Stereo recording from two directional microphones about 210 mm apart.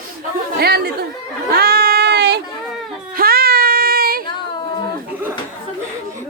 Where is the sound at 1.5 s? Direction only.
50° right (ahead or behind).